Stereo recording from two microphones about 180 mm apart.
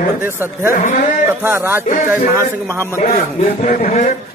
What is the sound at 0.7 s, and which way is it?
Speech, 45° left (ahead or behind).